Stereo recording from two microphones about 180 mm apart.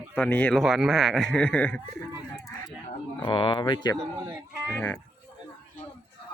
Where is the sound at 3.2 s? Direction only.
30° left (ahead or behind).